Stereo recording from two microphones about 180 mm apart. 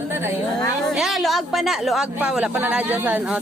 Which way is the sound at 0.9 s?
Centre (ahead or behind).